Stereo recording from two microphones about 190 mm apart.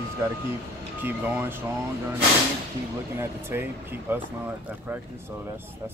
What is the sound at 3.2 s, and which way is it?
Speech, 10° right (ahead or behind).